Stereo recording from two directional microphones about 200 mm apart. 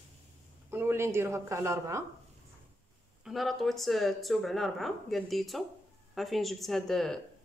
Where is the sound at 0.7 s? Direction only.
10° right (ahead or behind).